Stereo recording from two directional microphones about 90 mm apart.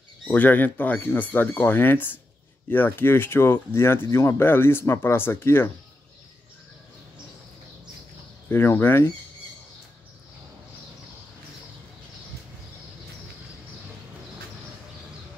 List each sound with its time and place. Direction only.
0.3 s speech: 20° left (ahead or behind)
8.5 s speech: 25° left (ahead or behind)